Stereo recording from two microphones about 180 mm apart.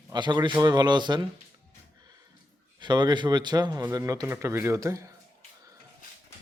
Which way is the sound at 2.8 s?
25° right (ahead or behind).